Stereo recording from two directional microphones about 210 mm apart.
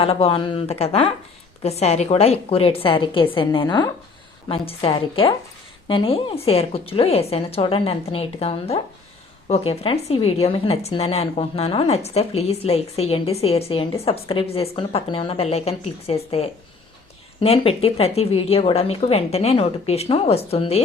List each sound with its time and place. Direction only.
0.0 s a woman's voice: 25° left (ahead or behind)